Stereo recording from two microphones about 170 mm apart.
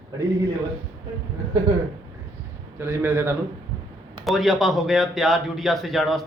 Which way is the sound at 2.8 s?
15° right (ahead or behind).